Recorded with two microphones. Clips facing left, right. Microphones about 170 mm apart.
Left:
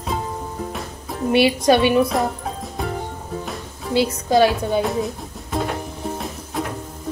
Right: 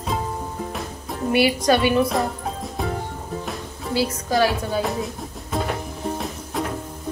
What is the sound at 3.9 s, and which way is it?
Speech, 20° left (ahead or behind).